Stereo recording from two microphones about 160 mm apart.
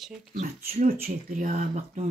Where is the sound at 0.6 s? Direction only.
70° right (ahead or behind); by 2.0 s 45° right (ahead or behind).